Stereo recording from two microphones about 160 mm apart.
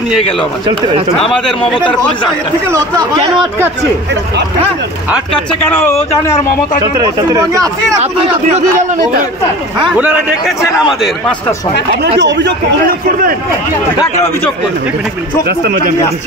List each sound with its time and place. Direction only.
1.1 s a man's voice: 5° left (ahead or behind)
5.3 s speech: 10° left (ahead or behind)
7.0 s speech: 20° right (ahead or behind)
8.0 s speech: 45° right (ahead or behind)
9.9 s a man's voice: 10° right (ahead or behind)
12.2 s speech: 90° right
15.4 s speech: 90° right